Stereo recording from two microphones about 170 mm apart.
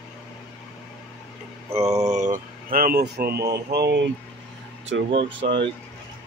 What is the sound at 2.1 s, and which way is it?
Speech, 45° right (ahead or behind).